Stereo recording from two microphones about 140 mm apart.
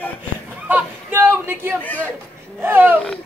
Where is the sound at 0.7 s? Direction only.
15° right (ahead or behind).